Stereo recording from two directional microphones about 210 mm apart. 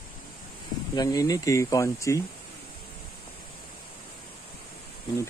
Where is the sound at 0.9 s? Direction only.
15° left (ahead or behind).